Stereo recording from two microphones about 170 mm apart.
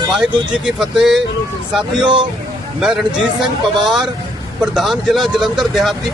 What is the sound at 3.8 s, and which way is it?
Speech, centre (ahead or behind).